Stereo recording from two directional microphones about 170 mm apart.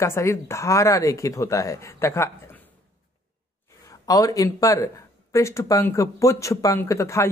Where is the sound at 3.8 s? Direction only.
20° left (ahead or behind).